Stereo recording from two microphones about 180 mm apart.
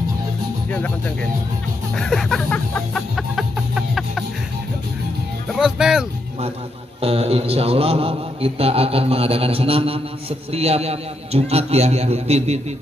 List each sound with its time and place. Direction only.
0.7 s speech: 10° left (ahead or behind)
2.0 s music: centre (ahead or behind)
5.5 s music: centre (ahead or behind)
7.0 s a man's voice: 35° right (ahead or behind)